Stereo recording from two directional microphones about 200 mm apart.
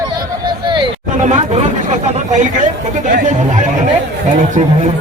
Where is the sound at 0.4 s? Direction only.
25° right (ahead or behind).